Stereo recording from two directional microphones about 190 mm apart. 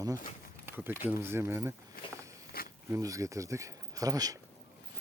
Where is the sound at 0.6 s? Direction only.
10° right (ahead or behind).